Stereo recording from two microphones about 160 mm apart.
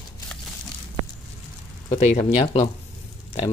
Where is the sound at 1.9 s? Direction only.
40° left (ahead or behind).